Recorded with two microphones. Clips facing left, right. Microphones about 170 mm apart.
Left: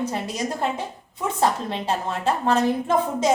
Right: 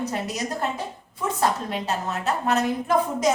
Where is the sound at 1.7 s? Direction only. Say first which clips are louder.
Left 2 dB; 30° left (ahead or behind).